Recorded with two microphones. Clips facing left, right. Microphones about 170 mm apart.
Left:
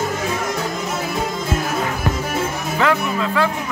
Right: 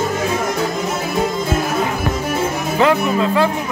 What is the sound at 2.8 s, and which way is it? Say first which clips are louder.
Music: right 4 dB; 25° right (ahead or behind).